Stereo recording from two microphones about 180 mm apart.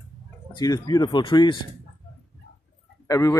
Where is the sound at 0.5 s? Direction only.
20° left (ahead or behind).